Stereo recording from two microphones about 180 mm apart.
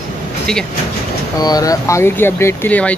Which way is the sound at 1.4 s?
20° left (ahead or behind).